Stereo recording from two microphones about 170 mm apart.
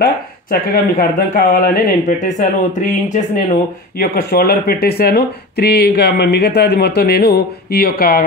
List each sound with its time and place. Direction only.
0.0 s speech: 55° left (ahead or behind)
4.0 s speech: 65° left (ahead or behind)